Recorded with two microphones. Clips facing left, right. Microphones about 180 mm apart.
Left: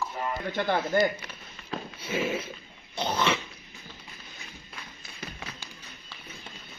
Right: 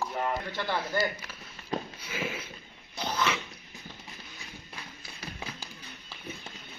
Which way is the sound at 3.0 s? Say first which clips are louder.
Left 3 dB; 25° left (ahead or behind).